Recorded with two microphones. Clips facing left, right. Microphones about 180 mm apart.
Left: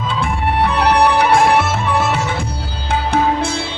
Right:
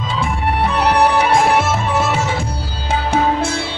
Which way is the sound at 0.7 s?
60° left (ahead or behind).